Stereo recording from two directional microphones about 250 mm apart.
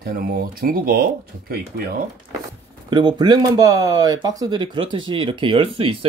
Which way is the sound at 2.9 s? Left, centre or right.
Centre.